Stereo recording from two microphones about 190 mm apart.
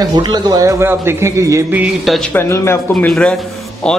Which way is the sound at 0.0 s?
20° right (ahead or behind).